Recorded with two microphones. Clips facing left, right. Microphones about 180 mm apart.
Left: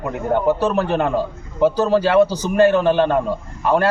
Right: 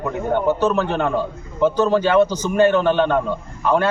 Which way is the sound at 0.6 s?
10° left (ahead or behind).